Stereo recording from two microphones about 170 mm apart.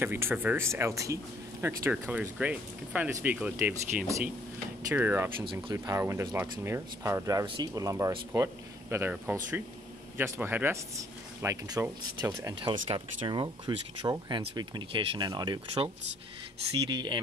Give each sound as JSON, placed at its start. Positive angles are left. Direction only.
{"t": 0.0, "sound": "speech", "side_deg": -15}
{"t": 5.4, "sound": "speech", "side_deg": -25}
{"t": 16.9, "sound": "speech", "side_deg": -25}